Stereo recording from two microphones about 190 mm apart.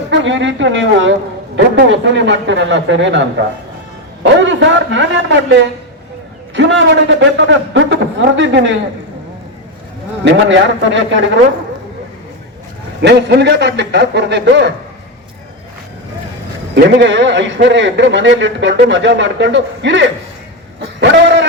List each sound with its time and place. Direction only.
0.1 s a man's voice: 75° right (ahead or behind)
1.5 s a man's voice: 70° right (ahead or behind)
4.2 s a sound: 75° right (ahead or behind)
6.5 s a man's voice: 75° right (ahead or behind)
10.2 s a man's voice: 75° right (ahead or behind)
13.0 s a man's voice: 65° right (ahead or behind)
16.7 s a man's voice: 70° right (ahead or behind)
20.8 s a sound: 65° right (ahead or behind)